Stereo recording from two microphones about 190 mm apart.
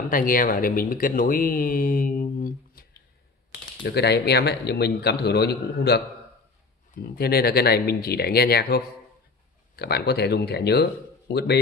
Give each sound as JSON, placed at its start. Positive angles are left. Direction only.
{"t": 0.1, "sound": "speech", "side_deg": 45}
{"t": 3.8, "sound": "a man's voice", "side_deg": 60}